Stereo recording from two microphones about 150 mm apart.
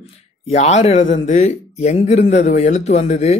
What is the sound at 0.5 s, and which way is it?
A man's voice, 50° left (ahead or behind).